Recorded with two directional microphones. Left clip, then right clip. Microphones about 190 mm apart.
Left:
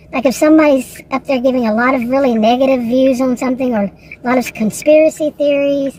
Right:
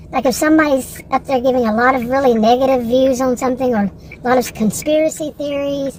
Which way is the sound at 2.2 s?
30° left (ahead or behind).